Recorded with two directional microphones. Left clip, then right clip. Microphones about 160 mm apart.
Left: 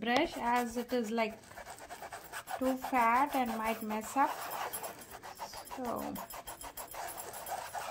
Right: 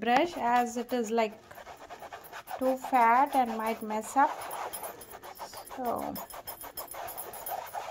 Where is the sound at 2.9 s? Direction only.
35° right (ahead or behind).